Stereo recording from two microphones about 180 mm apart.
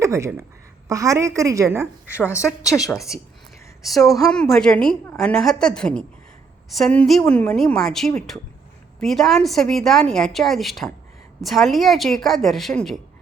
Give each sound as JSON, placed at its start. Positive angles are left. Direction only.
{"t": 0.0, "sound": "a woman's voice", "side_deg": -15}